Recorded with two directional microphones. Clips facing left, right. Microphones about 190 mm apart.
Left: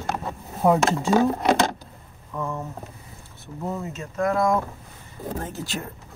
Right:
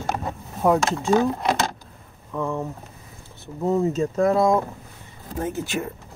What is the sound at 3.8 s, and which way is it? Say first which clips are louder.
Speech: right 7 dB; 30° right (ahead or behind).